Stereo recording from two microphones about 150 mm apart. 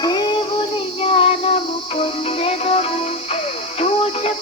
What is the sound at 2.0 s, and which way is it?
Music, 40° left (ahead or behind).